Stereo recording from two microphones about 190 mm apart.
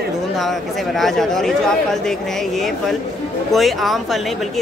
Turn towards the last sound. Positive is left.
turn(degrees=0)  # may be behind; listen again after turning